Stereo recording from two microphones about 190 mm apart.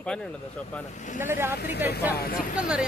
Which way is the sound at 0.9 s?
40° left (ahead or behind).